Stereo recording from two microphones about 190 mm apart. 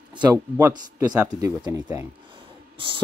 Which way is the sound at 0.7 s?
20° right (ahead or behind).